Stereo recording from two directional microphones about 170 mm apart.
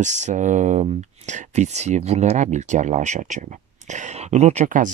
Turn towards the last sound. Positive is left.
turn(degrees=-50)  # may be behind; listen again after turning